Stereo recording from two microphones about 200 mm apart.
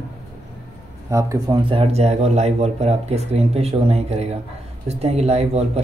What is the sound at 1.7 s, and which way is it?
Speech, 30° right (ahead or behind).